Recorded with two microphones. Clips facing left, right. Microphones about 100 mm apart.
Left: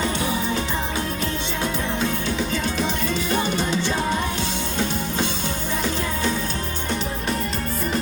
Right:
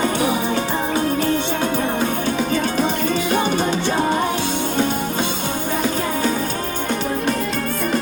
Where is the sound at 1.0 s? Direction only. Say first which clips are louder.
Right 8 dB; 55° right (ahead or behind).